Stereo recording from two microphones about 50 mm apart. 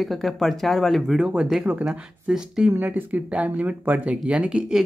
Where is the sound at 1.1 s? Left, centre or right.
Right.